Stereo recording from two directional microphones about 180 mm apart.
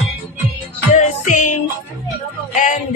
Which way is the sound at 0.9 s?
45° left (ahead or behind).